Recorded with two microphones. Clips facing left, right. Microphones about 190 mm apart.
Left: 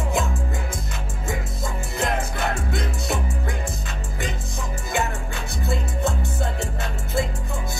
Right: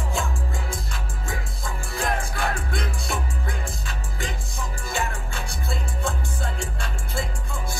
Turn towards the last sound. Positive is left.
turn(degrees=20)  # may be behind; listen again after turning